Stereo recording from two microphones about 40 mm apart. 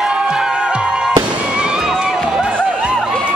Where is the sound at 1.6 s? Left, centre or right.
Centre.